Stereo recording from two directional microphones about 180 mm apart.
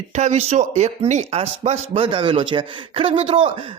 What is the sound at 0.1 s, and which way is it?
A man's voice, 40° right (ahead or behind).